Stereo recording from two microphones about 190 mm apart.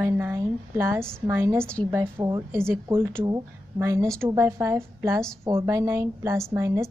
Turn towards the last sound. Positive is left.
turn(degrees=-15)  # may be behind; listen again after turning